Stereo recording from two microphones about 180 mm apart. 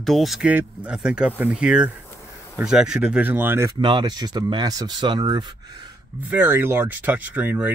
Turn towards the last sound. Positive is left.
turn(degrees=-10)  # may be behind; listen again after turning